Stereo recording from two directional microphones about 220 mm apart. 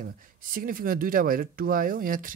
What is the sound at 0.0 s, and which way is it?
Speech, 40° right (ahead or behind).